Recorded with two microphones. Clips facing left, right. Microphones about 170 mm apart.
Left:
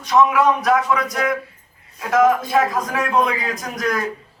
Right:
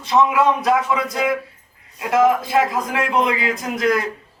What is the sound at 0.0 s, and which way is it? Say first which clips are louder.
A man's voice: left 1 dB; 25° right (ahead or behind).